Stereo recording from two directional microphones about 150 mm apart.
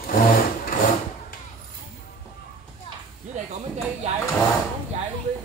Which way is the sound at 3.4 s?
55° right (ahead or behind).